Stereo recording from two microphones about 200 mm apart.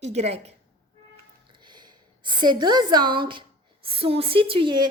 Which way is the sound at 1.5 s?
20° right (ahead or behind).